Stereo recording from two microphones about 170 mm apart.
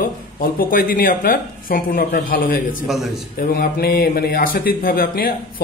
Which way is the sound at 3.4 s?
60° left (ahead or behind).